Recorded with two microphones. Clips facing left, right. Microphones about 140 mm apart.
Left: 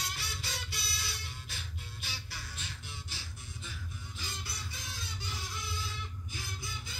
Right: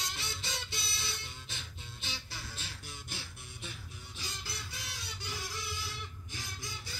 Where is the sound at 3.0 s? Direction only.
55° right (ahead or behind).